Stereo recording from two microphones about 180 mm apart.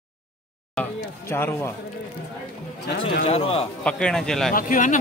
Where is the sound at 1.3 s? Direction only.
10° left (ahead or behind).